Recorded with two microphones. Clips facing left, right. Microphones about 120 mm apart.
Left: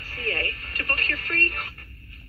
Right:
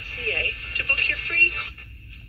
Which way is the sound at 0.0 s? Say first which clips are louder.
Left 1 dB; 35° left (ahead or behind).